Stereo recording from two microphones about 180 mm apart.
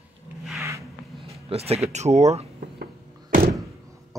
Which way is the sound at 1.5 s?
35° right (ahead or behind).